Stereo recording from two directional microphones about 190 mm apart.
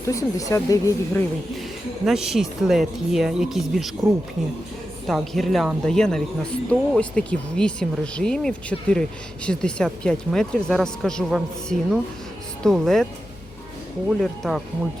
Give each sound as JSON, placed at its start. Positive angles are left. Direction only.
{"t": 0.0, "sound": "speech", "side_deg": 15}
{"t": 2.0, "sound": "a woman's voice", "side_deg": 0}
{"t": 5.0, "sound": "a woman's voice", "side_deg": 0}
{"t": 14.1, "sound": "a woman's voice", "side_deg": 0}